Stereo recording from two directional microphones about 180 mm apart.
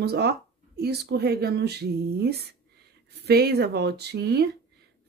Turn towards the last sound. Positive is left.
turn(degrees=-65)  # may be behind; listen again after turning